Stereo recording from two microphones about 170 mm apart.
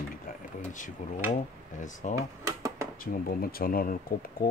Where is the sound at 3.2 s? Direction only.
60° left (ahead or behind).